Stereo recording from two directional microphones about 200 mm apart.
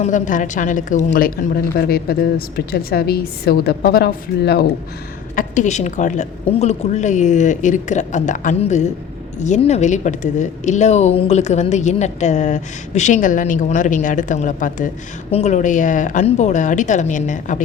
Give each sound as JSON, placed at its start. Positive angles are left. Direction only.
{"t": 0.0, "sound": "a woman's voice", "side_deg": 40}
{"t": 5.3, "sound": "speech", "side_deg": 40}